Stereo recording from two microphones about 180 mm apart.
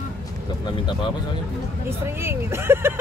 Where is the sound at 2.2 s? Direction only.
15° right (ahead or behind).